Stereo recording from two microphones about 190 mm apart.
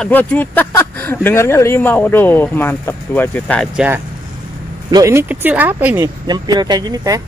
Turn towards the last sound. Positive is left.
turn(degrees=-20)  # may be behind; listen again after turning